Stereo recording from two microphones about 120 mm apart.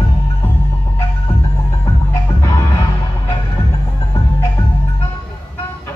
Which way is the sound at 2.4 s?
30° left (ahead or behind).